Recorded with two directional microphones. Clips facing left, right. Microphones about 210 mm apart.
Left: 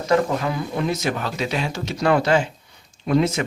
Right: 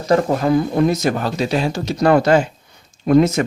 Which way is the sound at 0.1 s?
40° right (ahead or behind).